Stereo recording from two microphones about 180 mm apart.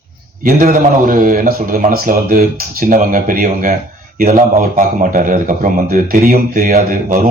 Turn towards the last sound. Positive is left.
turn(degrees=-50)  # may be behind; listen again after turning